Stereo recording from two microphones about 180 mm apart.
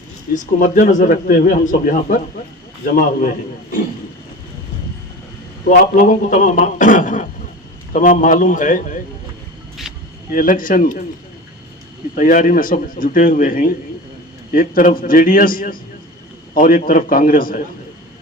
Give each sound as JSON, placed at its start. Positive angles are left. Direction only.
{"t": 0.3, "sound": "speech", "side_deg": 45}
{"t": 6.3, "sound": "speech", "side_deg": 45}
{"t": 10.3, "sound": "speech", "side_deg": 50}
{"t": 12.1, "sound": "speech", "side_deg": 50}